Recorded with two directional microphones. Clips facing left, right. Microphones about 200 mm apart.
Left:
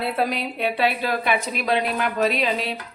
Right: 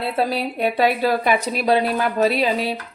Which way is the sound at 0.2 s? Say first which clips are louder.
Right 6 dB; 35° right (ahead or behind).